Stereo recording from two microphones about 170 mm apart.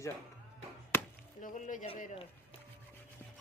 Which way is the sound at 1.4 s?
50° left (ahead or behind).